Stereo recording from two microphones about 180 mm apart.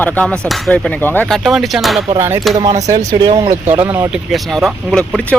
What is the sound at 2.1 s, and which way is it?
Speech, 15° right (ahead or behind).